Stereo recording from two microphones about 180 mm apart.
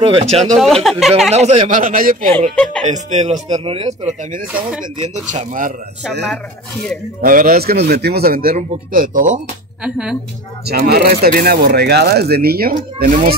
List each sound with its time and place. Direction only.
0.0 s speech: 30° right (ahead or behind)
0.8 s speech: centre (ahead or behind)
1.3 s speech: 40° right (ahead or behind)
2.5 s speech: 5° left (ahead or behind)
2.9 s speech: 40° right (ahead or behind)
4.3 s speech: 50° right (ahead or behind)
5.0 s speech: 40° right (ahead or behind)
7.2 s speech: 50° right (ahead or behind)
9.8 s speech: 5° right (ahead or behind)
10.7 s speech: 60° right (ahead or behind)